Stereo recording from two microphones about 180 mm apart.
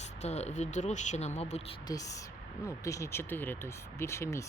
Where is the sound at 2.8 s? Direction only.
15° left (ahead or behind).